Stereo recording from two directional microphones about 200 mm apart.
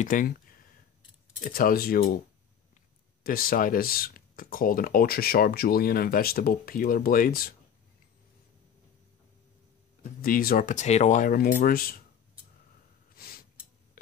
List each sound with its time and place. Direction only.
0.0 s speech: 45° left (ahead or behind)
3.3 s speech: 45° left (ahead or behind)
10.2 s speech: 45° left (ahead or behind)
13.1 s snort: 50° left (ahead or behind)